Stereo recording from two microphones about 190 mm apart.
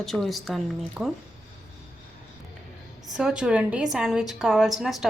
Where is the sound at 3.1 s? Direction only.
5° right (ahead or behind).